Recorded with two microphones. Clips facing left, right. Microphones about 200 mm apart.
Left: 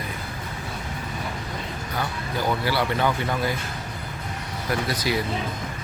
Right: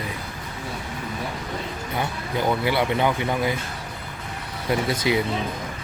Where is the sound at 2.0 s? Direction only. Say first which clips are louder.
Right 2 dB; 20° right (ahead or behind).